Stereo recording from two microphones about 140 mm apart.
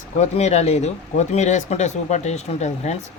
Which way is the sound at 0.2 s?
55° left (ahead or behind).